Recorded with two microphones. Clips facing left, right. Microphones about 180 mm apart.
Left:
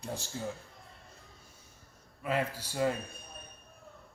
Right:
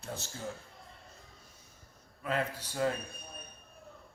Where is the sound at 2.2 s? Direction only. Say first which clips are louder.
Left 1 dB; 10° left (ahead or behind).